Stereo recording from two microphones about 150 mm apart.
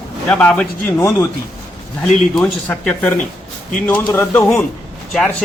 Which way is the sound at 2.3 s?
5° left (ahead or behind).